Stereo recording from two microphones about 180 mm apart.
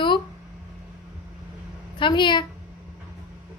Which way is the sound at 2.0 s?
25° left (ahead or behind).